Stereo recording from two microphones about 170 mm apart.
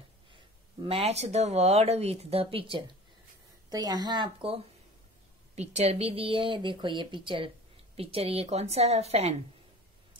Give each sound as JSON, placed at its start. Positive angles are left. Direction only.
{"t": 0.8, "sound": "a woman's voice", "side_deg": -35}
{"t": 3.7, "sound": "speech", "side_deg": -25}
{"t": 5.6, "sound": "a woman's voice", "side_deg": -40}